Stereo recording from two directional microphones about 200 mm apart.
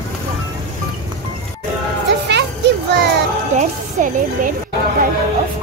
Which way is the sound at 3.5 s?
40° right (ahead or behind).